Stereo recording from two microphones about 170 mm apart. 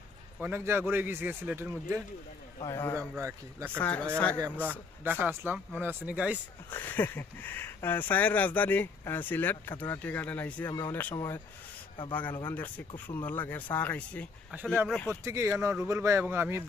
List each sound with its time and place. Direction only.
0.3 s a man's voice: 10° right (ahead or behind)
2.6 s speech: 15° left (ahead or behind)
3.2 s a man's voice: 15° right (ahead or behind)
3.8 s speech: 10° left (ahead or behind)
4.6 s a man's voice: 10° right (ahead or behind)
6.7 s speech: 10° left (ahead or behind)
15.1 s a man's voice: 15° right (ahead or behind)